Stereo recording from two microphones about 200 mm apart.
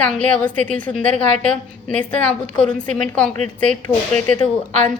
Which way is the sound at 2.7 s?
40° right (ahead or behind).